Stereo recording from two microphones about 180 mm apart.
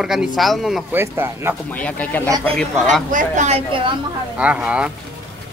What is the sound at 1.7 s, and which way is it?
Speech, 10° left (ahead or behind).